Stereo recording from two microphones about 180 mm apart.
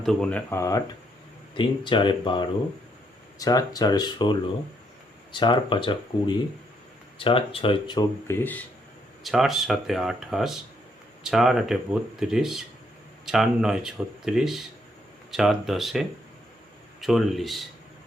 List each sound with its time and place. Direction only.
0.0 s speech: centre (ahead or behind)
1.5 s speech: 25° left (ahead or behind)
8.3 s speech: 10° left (ahead or behind)
9.2 s speech: centre (ahead or behind)